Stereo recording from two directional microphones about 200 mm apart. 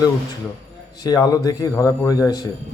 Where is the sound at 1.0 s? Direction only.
20° left (ahead or behind).